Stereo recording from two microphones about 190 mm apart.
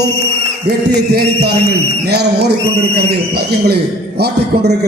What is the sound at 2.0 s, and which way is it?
A man's voice, 60° right (ahead or behind).